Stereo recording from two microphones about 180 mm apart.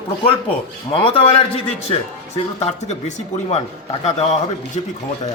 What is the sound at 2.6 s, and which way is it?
Speech, 40° left (ahead or behind).